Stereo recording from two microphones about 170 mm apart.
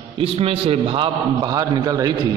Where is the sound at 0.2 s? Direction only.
35° right (ahead or behind).